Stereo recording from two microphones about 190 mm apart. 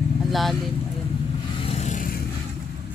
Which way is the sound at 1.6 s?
35° left (ahead or behind).